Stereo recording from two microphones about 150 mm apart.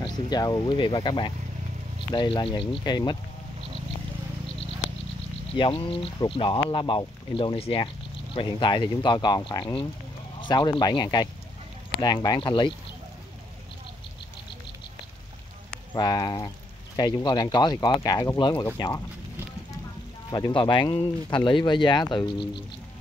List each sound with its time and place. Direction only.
0.0 s speech: 30° left (ahead or behind)
5.6 s speech: 35° left (ahead or behind)
15.9 s speech: 30° left (ahead or behind)
20.2 s speech: 25° left (ahead or behind)